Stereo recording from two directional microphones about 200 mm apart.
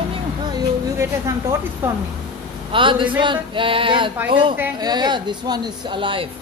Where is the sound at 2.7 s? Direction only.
25° right (ahead or behind).